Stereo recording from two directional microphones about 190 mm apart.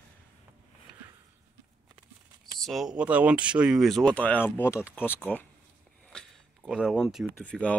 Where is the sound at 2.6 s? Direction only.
Centre (ahead or behind).